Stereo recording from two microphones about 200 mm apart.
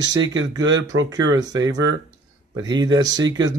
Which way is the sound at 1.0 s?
85° right.